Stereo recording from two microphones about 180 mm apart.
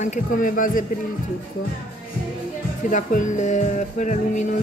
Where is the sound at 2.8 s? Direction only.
45° left (ahead or behind).